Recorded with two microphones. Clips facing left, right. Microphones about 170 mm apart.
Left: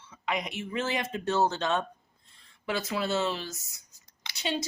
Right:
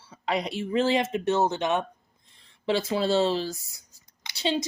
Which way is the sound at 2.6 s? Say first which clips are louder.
Right 6 dB; 30° right (ahead or behind).